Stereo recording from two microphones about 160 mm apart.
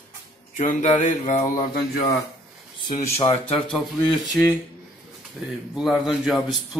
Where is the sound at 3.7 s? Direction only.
Centre (ahead or behind).